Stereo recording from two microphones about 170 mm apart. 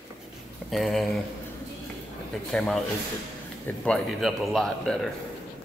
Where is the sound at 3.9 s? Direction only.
5° left (ahead or behind).